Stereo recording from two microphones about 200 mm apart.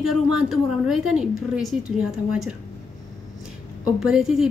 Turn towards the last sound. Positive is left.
turn(degrees=0)  # may be behind; listen again after turning